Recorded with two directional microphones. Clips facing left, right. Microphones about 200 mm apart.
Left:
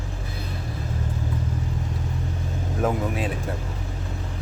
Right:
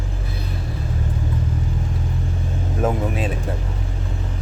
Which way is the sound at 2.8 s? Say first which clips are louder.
Right 2 dB; 25° right (ahead or behind).